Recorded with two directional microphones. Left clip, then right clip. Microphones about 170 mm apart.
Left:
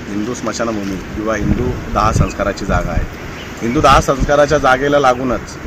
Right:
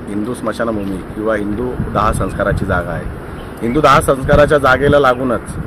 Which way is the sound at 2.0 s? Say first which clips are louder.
Even; 30° right (ahead or behind).